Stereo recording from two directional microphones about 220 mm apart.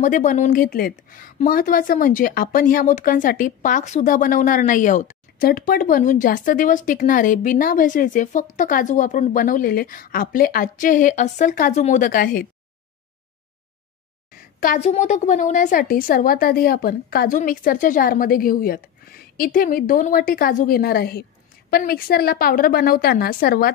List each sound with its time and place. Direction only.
0.0 s speech: 35° left (ahead or behind)
14.3 s speech: 40° left (ahead or behind)